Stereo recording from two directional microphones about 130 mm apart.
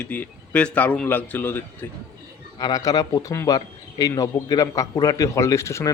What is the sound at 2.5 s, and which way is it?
A man's voice, 30° left (ahead or behind).